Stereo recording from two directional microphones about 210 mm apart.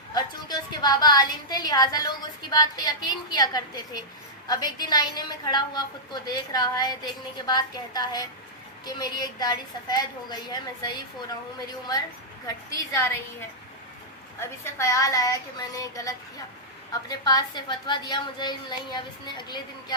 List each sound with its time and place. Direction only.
0.1 s a woman's voice: 20° left (ahead or behind)
12.7 s a woman's voice: 15° left (ahead or behind)
14.3 s a woman's voice: 10° left (ahead or behind)